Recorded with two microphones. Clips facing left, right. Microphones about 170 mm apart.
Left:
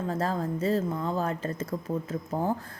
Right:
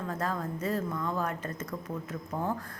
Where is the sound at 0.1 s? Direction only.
30° left (ahead or behind).